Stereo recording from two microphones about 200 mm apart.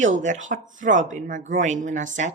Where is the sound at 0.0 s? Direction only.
40° right (ahead or behind).